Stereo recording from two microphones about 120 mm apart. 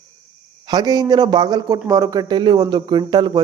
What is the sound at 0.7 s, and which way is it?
Speech, 35° right (ahead or behind).